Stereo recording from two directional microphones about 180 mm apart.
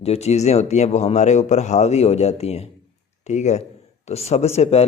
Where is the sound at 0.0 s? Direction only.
35° left (ahead or behind).